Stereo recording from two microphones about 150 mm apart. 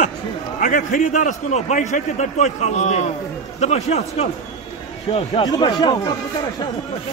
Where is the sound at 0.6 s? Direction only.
60° left (ahead or behind); by 6.1 s 30° left (ahead or behind).